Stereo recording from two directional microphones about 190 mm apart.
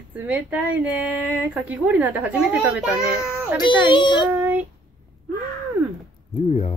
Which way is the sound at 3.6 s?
25° left (ahead or behind).